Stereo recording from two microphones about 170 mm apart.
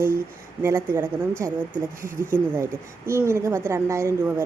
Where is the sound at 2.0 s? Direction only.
50° right (ahead or behind).